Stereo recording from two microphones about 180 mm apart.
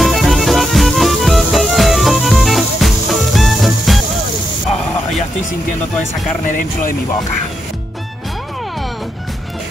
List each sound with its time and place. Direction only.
0.0 s music: centre (ahead or behind)
6.5 s speech: 50° left (ahead or behind)